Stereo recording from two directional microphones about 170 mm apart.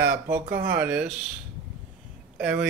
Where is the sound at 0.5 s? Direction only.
60° right (ahead or behind).